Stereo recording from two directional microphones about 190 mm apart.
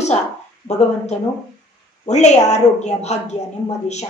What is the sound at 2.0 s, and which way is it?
A woman's voice, 35° left (ahead or behind).